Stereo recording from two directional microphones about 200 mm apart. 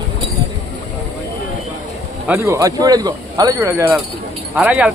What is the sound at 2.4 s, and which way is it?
Speech, 15° right (ahead or behind).